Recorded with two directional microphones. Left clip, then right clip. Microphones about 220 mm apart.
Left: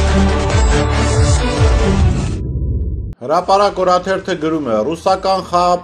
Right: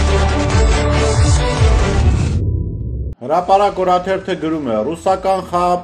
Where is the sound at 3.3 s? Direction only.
30° left (ahead or behind).